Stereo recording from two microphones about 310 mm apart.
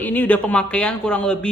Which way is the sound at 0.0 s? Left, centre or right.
Centre.